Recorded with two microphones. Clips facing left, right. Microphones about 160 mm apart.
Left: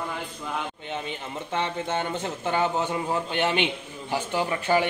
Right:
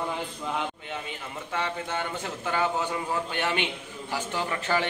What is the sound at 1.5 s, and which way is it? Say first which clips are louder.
A man's voice: left 3 dB; 25° left (ahead or behind).